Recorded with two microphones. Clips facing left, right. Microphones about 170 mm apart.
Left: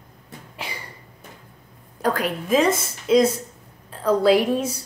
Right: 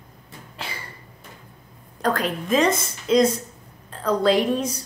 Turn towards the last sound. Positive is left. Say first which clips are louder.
# left 2 dB
turn(degrees=5)  # may be behind; listen again after turning